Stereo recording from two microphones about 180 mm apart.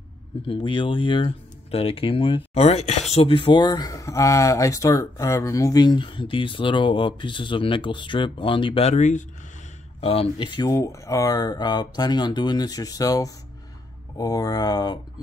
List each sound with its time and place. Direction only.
0.5 s speech: 30° left (ahead or behind)